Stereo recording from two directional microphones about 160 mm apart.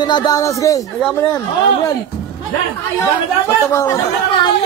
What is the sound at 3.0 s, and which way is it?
Speech, 20° left (ahead or behind).